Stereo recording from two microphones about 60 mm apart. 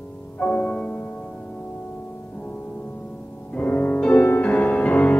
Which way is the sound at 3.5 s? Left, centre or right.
Left.